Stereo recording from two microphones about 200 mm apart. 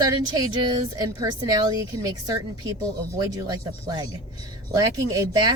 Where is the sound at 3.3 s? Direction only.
20° right (ahead or behind).